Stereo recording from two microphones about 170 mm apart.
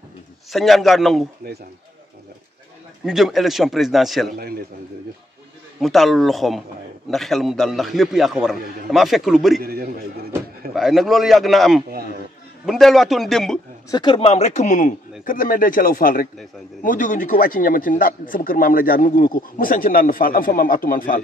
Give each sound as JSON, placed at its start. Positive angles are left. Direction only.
{"t": 0.5, "sound": "a man's voice", "side_deg": 0}
{"t": 1.4, "sound": "speech", "side_deg": -60}
{"t": 3.1, "sound": "a man's voice", "side_deg": 0}
{"t": 5.8, "sound": "a man's voice", "side_deg": 0}
{"t": 9.6, "sound": "a man's voice", "side_deg": -60}
{"t": 10.7, "sound": "a man's voice", "side_deg": 0}
{"t": 13.8, "sound": "speech", "side_deg": 25}